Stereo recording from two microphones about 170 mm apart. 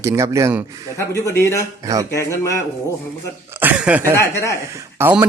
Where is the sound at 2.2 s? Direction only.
15° left (ahead or behind).